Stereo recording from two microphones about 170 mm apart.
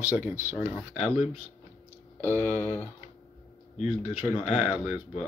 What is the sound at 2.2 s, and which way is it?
Speech, 15° right (ahead or behind).